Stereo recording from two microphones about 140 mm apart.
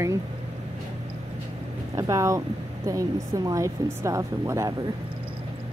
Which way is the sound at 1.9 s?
25° right (ahead or behind).